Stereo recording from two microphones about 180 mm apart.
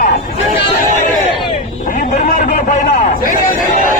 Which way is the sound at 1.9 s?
45° left (ahead or behind).